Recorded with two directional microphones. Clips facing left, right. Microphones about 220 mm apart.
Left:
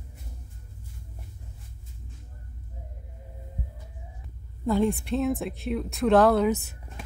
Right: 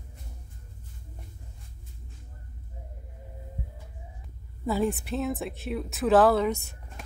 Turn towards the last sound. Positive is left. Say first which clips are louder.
# left 5 dB
turn(degrees=5)  # may be behind; listen again after turning